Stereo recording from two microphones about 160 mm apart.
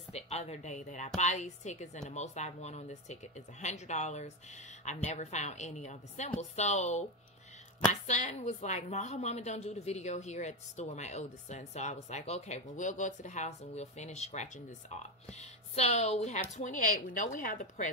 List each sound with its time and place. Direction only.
0.1 s a woman's voice: 40° left (ahead or behind)